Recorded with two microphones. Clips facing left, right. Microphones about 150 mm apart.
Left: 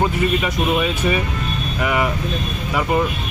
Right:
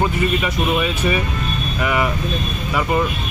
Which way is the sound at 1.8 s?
20° left (ahead or behind).